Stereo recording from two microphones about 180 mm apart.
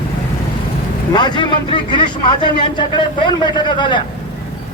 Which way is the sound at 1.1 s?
25° left (ahead or behind).